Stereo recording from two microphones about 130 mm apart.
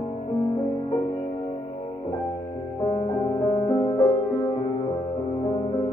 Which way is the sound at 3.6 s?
30° left (ahead or behind).